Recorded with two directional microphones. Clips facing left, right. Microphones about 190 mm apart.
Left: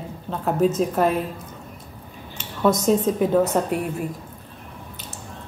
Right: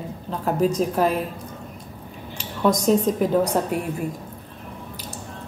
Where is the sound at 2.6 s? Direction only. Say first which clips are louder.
Even; centre (ahead or behind).